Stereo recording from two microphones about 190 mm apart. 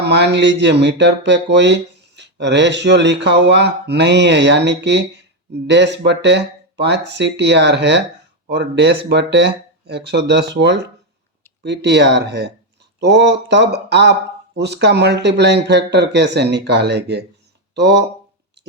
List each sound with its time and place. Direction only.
0.0 s speech: 60° right (ahead or behind)